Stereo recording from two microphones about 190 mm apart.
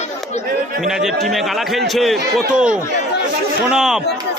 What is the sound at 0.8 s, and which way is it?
Speech, centre (ahead or behind).